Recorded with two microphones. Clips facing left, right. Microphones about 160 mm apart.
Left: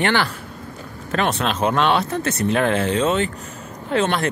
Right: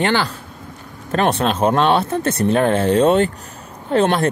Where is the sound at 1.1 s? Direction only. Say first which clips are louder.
Right 4 dB; 35° right (ahead or behind).